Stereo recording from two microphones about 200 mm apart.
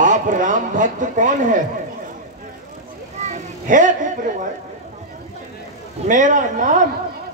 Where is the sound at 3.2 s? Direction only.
40° right (ahead or behind).